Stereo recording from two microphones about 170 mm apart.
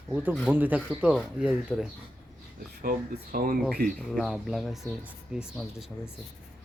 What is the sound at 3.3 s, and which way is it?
Speech, 60° right (ahead or behind).